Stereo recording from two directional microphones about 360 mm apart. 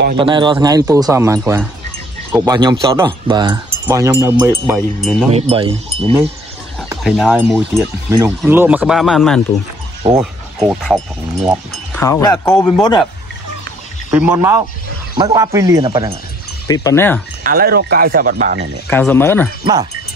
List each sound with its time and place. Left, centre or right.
0.2 s speech: centre
5.3 s speech: centre
6.8 s speech: centre
14.1 s speech: centre
16.6 s speech: centre
17.4 s speech: right
18.9 s speech: centre
19.6 s speech: centre